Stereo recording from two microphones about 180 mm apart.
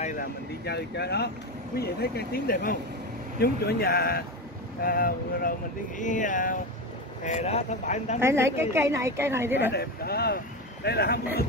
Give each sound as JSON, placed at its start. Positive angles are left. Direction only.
{"t": 0.0, "sound": "speech", "side_deg": 45}
{"t": 0.7, "sound": "speech", "side_deg": 65}
{"t": 8.2, "sound": "a woman's voice", "side_deg": -15}
{"t": 9.8, "sound": "speech", "side_deg": 60}